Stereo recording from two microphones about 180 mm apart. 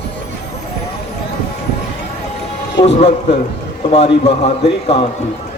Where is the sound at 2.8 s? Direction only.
35° left (ahead or behind).